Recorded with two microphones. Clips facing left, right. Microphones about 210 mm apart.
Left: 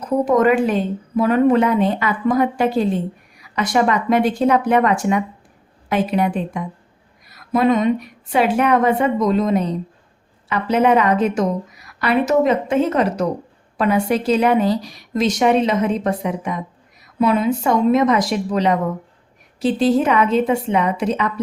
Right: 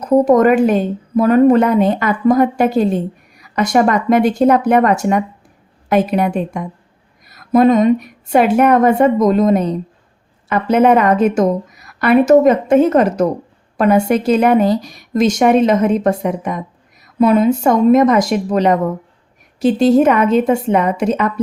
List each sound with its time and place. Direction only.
0.3 s a woman's voice: 45° right (ahead or behind)